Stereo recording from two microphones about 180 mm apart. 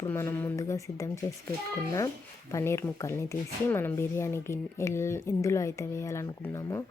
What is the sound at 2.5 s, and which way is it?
Speech, 15° left (ahead or behind).